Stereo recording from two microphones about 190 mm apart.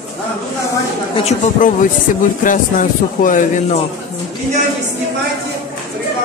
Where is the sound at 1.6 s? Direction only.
45° left (ahead or behind).